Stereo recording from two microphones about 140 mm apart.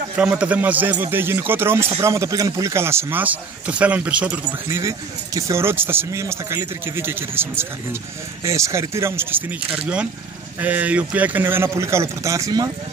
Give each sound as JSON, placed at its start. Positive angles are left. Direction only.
{"t": 0.1, "sound": "speech", "side_deg": -10}